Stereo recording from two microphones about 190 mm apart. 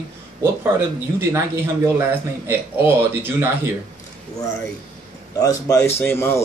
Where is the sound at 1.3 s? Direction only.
15° right (ahead or behind).